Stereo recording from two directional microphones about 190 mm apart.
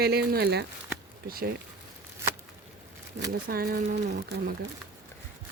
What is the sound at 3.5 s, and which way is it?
Speech, 50° right (ahead or behind).